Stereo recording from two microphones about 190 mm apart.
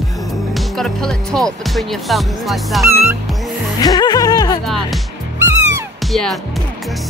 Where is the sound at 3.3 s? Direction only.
Centre (ahead or behind).